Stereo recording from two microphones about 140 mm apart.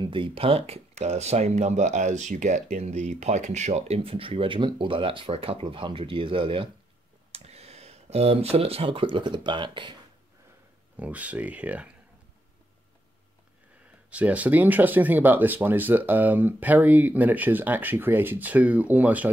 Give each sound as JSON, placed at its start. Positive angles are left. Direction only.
{"t": 0.0, "sound": "speech", "side_deg": -35}
{"t": 7.3, "sound": "speech", "side_deg": -50}
{"t": 11.0, "sound": "speech", "side_deg": -10}
{"t": 14.1, "sound": "speech", "side_deg": -10}